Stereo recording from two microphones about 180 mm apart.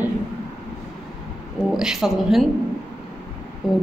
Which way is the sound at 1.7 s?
Centre (ahead or behind).